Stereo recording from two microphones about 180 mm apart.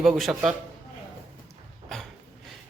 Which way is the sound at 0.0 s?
Centre (ahead or behind).